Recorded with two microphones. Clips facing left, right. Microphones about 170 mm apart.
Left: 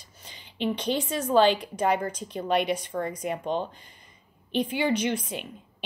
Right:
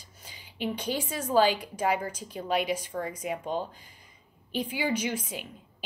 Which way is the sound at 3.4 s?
20° left (ahead or behind).